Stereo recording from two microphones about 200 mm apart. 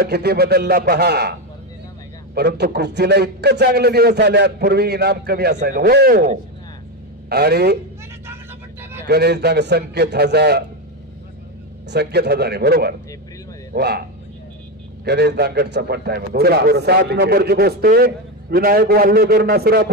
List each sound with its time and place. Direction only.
0.0 s a man's voice: 55° right (ahead or behind)
2.3 s a man's voice: 55° right (ahead or behind)
9.0 s a man's voice: 55° right (ahead or behind)
11.9 s a man's voice: 55° right (ahead or behind)
15.0 s a man's voice: 55° right (ahead or behind)